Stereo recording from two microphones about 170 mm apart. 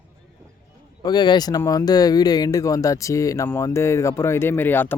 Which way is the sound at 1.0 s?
25° left (ahead or behind).